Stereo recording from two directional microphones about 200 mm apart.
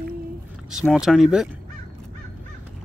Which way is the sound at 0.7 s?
Centre (ahead or behind).